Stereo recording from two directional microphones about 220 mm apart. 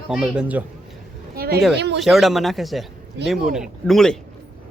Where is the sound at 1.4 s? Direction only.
45° right (ahead or behind).